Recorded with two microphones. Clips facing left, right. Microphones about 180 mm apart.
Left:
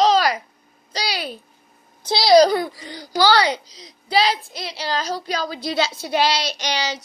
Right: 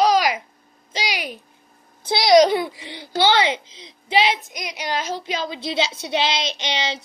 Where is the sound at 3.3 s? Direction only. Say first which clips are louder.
Left 1 dB; 40° left (ahead or behind).